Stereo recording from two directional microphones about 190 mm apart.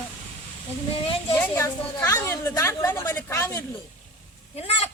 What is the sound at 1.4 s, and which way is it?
A woman's voice, 10° left (ahead or behind).